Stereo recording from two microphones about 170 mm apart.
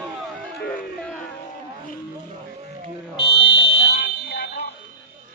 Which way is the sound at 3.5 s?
90° left.